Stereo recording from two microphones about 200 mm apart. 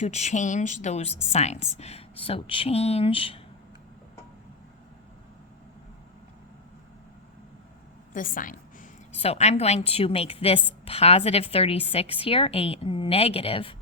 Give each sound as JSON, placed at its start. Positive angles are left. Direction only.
{"t": 0.0, "sound": "a woman's voice", "side_deg": 35}
{"t": 8.1, "sound": "a woman's voice", "side_deg": 45}